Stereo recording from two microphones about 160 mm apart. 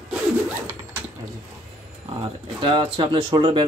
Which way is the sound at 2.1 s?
35° right (ahead or behind).